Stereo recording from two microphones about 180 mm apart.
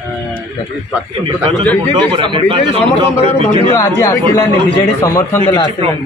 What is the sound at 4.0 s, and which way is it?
A man's voice, 15° left (ahead or behind).